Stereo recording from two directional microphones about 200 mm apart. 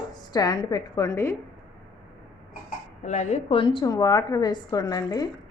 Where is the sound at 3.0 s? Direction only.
35° left (ahead or behind); by 5.3 s 20° left (ahead or behind).